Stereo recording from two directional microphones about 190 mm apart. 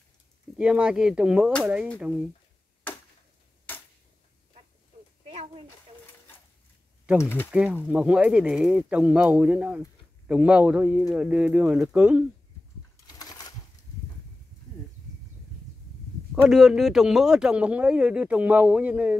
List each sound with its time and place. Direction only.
0.6 s speech: 5° right (ahead or behind)
7.2 s speech: 10° left (ahead or behind)
7.5 s speech: 5° right (ahead or behind)
13.0 s a sound: 20° left (ahead or behind)
16.4 s speech: centre (ahead or behind)